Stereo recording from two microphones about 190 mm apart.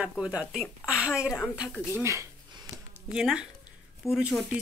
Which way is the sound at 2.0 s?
15° right (ahead or behind).